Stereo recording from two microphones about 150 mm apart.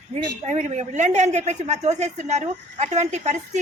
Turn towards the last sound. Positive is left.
turn(degrees=-50)  # may be behind; listen again after turning